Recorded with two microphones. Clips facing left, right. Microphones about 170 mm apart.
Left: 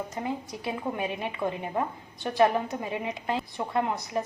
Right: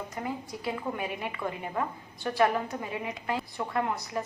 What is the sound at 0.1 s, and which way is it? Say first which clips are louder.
A woman's voice: left 2 dB; 20° left (ahead or behind).